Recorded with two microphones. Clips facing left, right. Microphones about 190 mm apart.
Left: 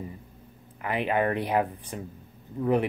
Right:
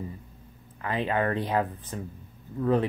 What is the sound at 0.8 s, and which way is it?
Speech, 15° left (ahead or behind).